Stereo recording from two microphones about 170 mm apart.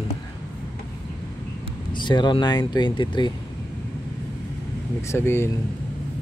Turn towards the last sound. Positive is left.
turn(degrees=15)  # may be behind; listen again after turning